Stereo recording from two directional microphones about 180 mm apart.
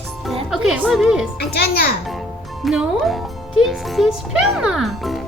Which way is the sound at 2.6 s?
Centre (ahead or behind).